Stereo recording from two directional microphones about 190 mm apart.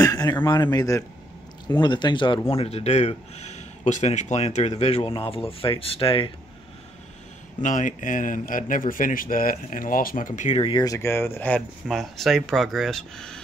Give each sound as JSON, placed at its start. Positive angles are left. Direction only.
{"t": 0.0, "sound": "a man's voice", "side_deg": 20}
{"t": 7.6, "sound": "speech", "side_deg": 40}